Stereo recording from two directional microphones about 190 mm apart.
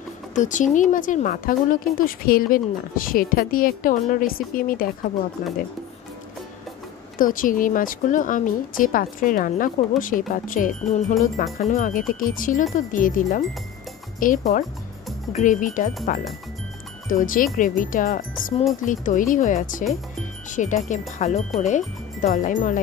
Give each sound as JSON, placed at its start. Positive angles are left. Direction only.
{"t": 0.3, "sound": "a woman's voice", "side_deg": 40}
{"t": 7.2, "sound": "a woman's voice", "side_deg": 45}
{"t": 17.1, "sound": "a woman's voice", "side_deg": 45}